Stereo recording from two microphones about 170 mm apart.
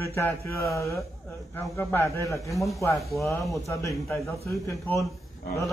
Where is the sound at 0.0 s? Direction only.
15° left (ahead or behind).